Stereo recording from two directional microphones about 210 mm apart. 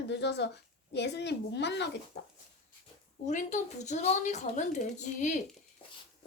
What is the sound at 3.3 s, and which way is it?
Speech, 35° left (ahead or behind).